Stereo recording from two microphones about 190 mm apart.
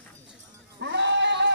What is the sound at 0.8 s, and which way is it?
Sheep, 65° right (ahead or behind).